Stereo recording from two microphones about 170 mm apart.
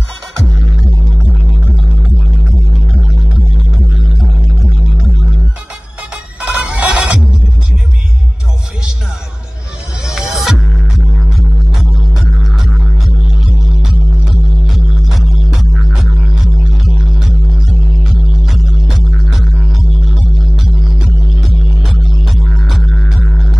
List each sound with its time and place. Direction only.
6.4 s music: 10° right (ahead or behind)
10.0 s music: centre (ahead or behind)
14.2 s music: centre (ahead or behind)
18.4 s music: centre (ahead or behind)
21.4 s music: centre (ahead or behind)